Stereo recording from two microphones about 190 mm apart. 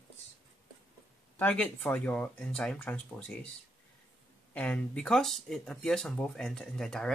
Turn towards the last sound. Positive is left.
turn(degrees=5)  # may be behind; listen again after turning